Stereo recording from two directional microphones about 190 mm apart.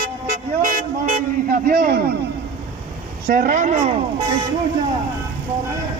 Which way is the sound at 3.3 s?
45° right (ahead or behind).